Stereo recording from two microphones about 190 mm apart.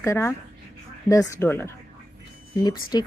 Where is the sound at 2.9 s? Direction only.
20° left (ahead or behind).